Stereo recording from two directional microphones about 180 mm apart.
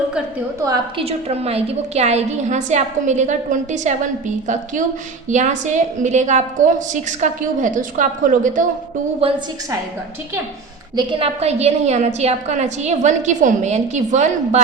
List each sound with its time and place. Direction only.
0.6 s a woman's voice: 20° right (ahead or behind)
1.0 s a woman's voice: 35° right (ahead or behind)
9.2 s a woman's voice: 35° right (ahead or behind)
10.9 s a woman's voice: 35° right (ahead or behind)